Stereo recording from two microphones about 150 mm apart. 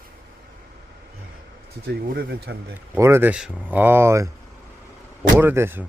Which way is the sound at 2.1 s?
90° right.